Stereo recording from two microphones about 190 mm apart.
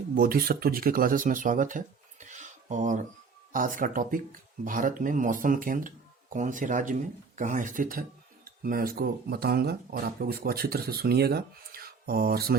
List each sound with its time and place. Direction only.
0.1 s speech: 50° right (ahead or behind)